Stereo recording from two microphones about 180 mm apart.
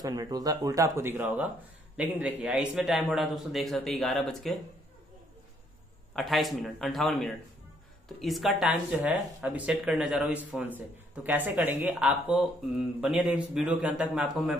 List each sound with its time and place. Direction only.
0.0 s a man's voice: 20° right (ahead or behind); by 4.6 s centre (ahead or behind)
6.1 s a man's voice: centre (ahead or behind)